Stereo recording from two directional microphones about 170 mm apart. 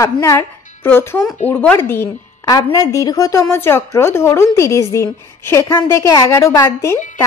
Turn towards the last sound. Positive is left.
turn(degrees=15)  # may be behind; listen again after turning